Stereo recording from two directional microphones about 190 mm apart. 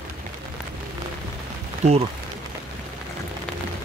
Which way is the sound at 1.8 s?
35° right (ahead or behind).